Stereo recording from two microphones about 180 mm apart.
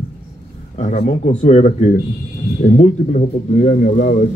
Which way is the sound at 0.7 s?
45° left (ahead or behind).